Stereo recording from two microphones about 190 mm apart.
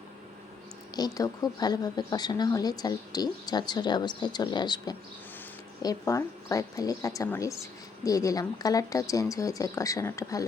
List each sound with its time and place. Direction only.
0.9 s speech: 20° left (ahead or behind)